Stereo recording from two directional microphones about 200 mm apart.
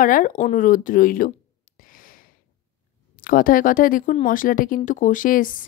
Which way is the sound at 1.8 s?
45° left (ahead or behind).